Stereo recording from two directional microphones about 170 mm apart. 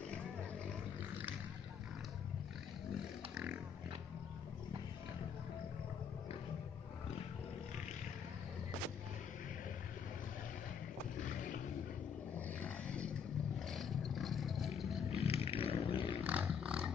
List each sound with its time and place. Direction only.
3.0 s pig: 5° right (ahead or behind)
12.4 s roar: 10° left (ahead or behind)
14.8 s roaring cats: centre (ahead or behind)
15.0 s roaring cats: 35° left (ahead or behind)
16.3 s roaring cats: 5° right (ahead or behind)